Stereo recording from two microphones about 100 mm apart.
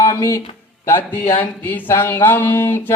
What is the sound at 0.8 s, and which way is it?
Speech, 20° left (ahead or behind).